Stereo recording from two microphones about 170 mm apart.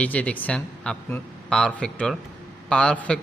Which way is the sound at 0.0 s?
10° left (ahead or behind).